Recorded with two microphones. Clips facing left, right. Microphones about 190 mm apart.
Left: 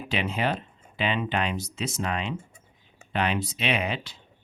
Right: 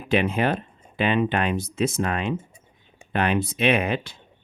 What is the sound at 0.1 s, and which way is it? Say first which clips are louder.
Speech: right 6 dB; 50° right (ahead or behind).